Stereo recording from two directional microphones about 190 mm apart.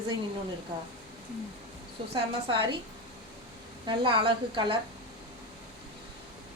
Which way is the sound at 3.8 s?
25° right (ahead or behind).